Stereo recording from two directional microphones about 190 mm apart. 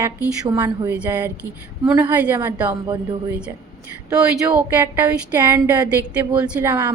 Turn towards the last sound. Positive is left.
turn(degrees=-10)  # may be behind; listen again after turning